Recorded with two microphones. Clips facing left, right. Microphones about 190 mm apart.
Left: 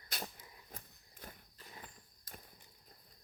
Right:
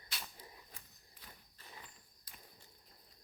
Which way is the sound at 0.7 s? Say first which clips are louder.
Left 6 dB; 40° left (ahead or behind).